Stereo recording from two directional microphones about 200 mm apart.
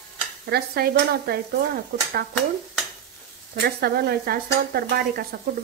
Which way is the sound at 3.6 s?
50° right (ahead or behind).